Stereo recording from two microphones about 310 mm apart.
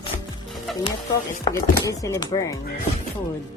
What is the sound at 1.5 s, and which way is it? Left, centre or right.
Chopping, centre.